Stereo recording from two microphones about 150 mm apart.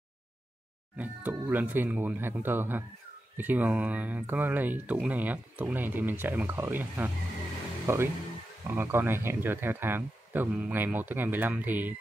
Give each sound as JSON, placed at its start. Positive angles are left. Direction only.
{"t": 0.9, "sound": "speech", "side_deg": -10}